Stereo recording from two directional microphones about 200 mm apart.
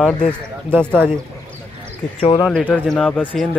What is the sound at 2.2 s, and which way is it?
Speech, 30° left (ahead or behind).